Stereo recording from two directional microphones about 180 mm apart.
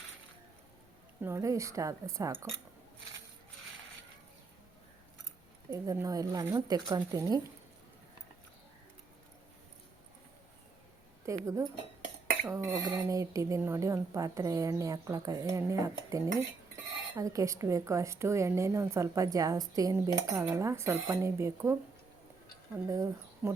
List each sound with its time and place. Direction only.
1.2 s a woman's voice: 15° right (ahead or behind)
5.7 s speech: 15° right (ahead or behind)
11.3 s a woman's voice: 15° right (ahead or behind)